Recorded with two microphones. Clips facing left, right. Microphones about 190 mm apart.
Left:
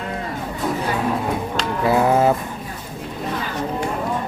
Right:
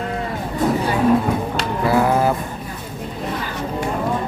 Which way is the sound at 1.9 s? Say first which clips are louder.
Left 1 dB; 20° left (ahead or behind).